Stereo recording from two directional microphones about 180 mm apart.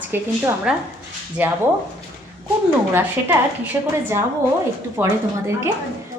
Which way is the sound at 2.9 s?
10° right (ahead or behind).